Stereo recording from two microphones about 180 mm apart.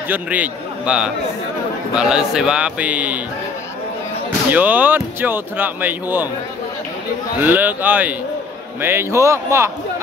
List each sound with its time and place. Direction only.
0.1 s a man's voice: 10° right (ahead or behind)
4.5 s speech: 10° right (ahead or behind)
7.4 s speech: 10° right (ahead or behind)